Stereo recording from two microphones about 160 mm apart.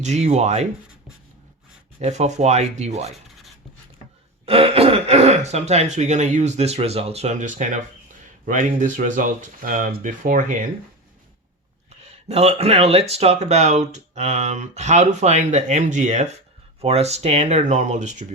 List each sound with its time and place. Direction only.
0.0 s speech: 45° right (ahead or behind)
2.0 s speech: 45° right (ahead or behind)
4.4 s speech: 35° right (ahead or behind); by 10.6 s 55° right (ahead or behind)
11.9 s speech: 40° right (ahead or behind)